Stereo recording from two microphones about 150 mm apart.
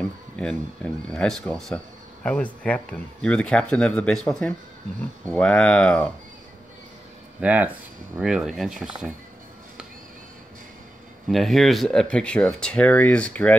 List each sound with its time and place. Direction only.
0.0 s speech: 5° left (ahead or behind)
7.3 s speech: 10° right (ahead or behind)
11.2 s speech: centre (ahead or behind)